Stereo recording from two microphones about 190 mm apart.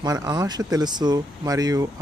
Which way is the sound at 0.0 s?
20° right (ahead or behind).